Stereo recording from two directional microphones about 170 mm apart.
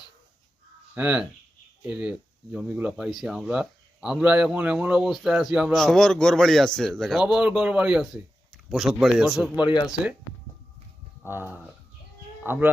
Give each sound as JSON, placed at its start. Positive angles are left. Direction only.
{"t": 0.9, "sound": "speech", "side_deg": -10}
{"t": 9.6, "sound": "speech", "side_deg": 25}
{"t": 11.2, "sound": "speech", "side_deg": -10}